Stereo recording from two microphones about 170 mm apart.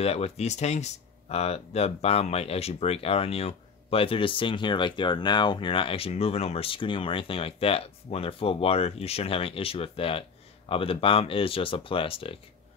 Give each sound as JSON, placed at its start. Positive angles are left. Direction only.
{"t": 0.0, "sound": "speech", "side_deg": 35}